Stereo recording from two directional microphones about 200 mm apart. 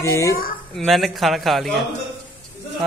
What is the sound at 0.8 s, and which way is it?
Speech, centre (ahead or behind).